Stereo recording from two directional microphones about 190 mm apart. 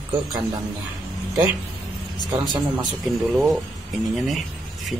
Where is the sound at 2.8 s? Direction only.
Centre (ahead or behind).